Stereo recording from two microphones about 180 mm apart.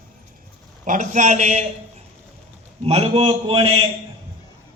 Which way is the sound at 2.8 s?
35° right (ahead or behind).